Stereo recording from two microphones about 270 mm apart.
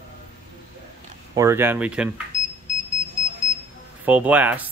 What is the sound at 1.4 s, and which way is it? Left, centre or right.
Speech, centre.